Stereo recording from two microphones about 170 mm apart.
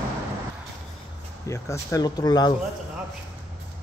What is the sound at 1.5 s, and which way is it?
Speech, 15° left (ahead or behind).